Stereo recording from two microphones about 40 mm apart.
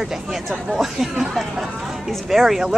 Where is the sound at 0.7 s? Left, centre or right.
Centre.